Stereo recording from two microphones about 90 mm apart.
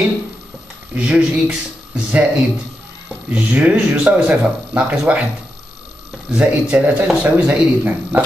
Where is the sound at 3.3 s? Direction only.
15° right (ahead or behind).